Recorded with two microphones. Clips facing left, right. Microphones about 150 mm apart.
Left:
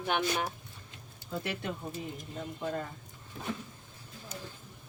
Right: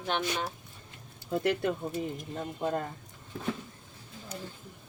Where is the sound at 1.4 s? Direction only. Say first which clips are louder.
Right 9 dB; 50° right (ahead or behind).